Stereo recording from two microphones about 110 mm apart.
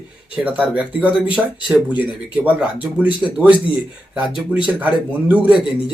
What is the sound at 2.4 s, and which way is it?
Speech, 10° right (ahead or behind).